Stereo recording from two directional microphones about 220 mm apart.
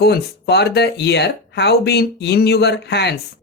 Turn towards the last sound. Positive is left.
turn(degrees=50)  # may be behind; listen again after turning